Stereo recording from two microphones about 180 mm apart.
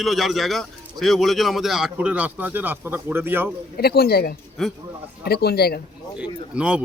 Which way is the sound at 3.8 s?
60° left (ahead or behind).